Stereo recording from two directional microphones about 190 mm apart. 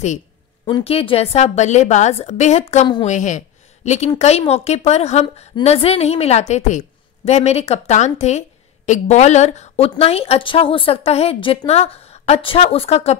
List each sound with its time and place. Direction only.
0.7 s a woman's voice: 25° left (ahead or behind)